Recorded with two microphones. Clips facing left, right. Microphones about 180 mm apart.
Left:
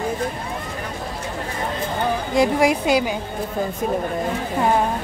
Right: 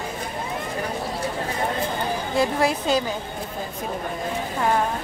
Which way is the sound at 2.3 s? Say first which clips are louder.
Left 4 dB; 15° left (ahead or behind).